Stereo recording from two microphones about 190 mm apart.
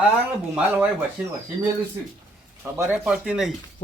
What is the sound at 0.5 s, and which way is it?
Speech, 10° right (ahead or behind).